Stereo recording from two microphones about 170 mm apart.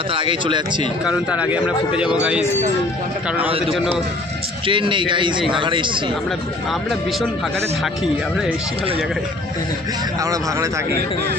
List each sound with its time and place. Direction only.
0.1 s speech: 30° right (ahead or behind)
1.0 s a man's voice: 5° right (ahead or behind)
4.6 s speech: 30° right (ahead or behind)
10.2 s speech: 20° right (ahead or behind)